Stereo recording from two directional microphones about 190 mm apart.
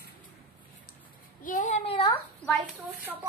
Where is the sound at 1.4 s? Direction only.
40° left (ahead or behind); by 2.1 s 25° left (ahead or behind).